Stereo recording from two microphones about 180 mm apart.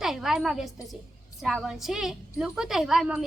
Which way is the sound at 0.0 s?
Centre (ahead or behind).